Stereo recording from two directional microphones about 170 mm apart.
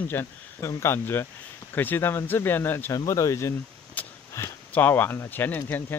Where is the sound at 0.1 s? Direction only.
15° left (ahead or behind).